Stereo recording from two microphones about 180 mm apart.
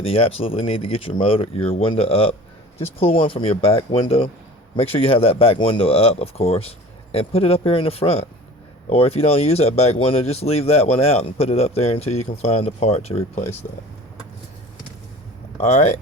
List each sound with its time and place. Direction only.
0.0 s speech: 35° left (ahead or behind)
15.5 s speech: 40° left (ahead or behind)